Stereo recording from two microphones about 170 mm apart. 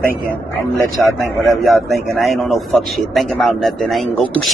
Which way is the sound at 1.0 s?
Centre (ahead or behind).